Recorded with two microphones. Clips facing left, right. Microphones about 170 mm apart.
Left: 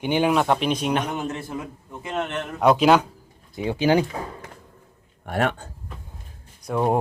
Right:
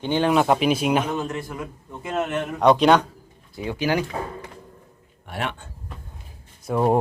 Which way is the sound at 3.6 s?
25° left (ahead or behind).